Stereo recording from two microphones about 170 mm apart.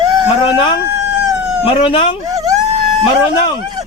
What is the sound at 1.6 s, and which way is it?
Speech, 30° left (ahead or behind).